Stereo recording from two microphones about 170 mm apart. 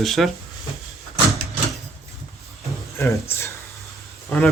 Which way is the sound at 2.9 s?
15° left (ahead or behind).